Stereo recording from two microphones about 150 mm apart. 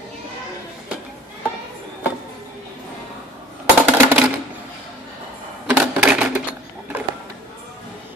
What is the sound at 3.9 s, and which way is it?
Typewriter, 10° right (ahead or behind).